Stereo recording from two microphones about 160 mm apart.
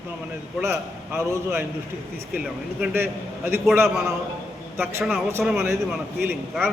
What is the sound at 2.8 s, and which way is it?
Speech, 15° right (ahead or behind).